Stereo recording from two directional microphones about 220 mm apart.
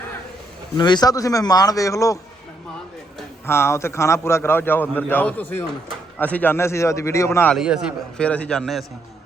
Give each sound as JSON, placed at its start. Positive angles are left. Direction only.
{"t": 0.8, "sound": "a man's voice", "side_deg": 20}
{"t": 3.4, "sound": "a man's voice", "side_deg": 10}
{"t": 7.5, "sound": "a man's voice", "side_deg": -5}